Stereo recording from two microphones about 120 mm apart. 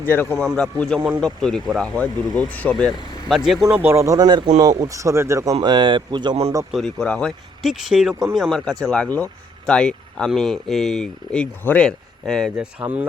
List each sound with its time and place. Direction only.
0.1 s speech: 15° left (ahead or behind); by 3.8 s centre (ahead or behind)
3.8 s speech: 20° right (ahead or behind)
5.6 s speech: 40° right (ahead or behind)
6.7 s speech: centre (ahead or behind)
12.9 s speech: 15° right (ahead or behind)